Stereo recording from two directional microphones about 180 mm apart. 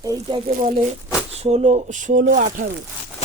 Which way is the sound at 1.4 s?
35° right (ahead or behind).